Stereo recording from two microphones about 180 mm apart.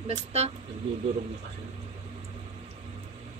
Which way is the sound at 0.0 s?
35° right (ahead or behind).